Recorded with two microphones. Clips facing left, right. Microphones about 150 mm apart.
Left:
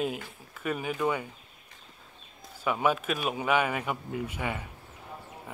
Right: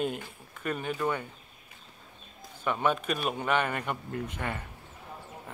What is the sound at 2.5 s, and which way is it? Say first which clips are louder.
Speech: left 1 dB; 5° left (ahead or behind).